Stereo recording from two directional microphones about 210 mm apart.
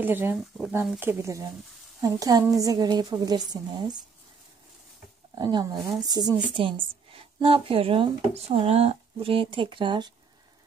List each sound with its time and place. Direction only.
0.0 s a woman's voice: 10° right (ahead or behind)
5.3 s speech: 20° right (ahead or behind)